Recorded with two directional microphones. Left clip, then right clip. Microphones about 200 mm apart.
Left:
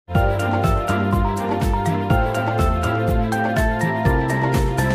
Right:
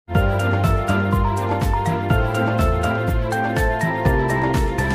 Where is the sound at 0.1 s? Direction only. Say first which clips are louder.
Left 1 dB; centre (ahead or behind).